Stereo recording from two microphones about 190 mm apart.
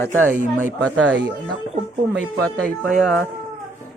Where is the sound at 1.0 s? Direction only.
80° right.